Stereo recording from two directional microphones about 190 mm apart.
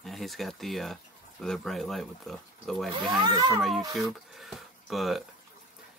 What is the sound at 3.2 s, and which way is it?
Speech, 20° right (ahead or behind).